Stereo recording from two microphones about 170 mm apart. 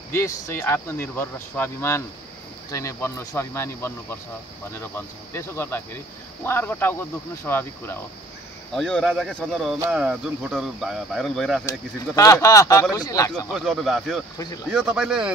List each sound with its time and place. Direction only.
0.1 s speech: 15° left (ahead or behind); by 11.6 s centre (ahead or behind)
12.2 s speech: 20° left (ahead or behind)
13.5 s speech: centre (ahead or behind)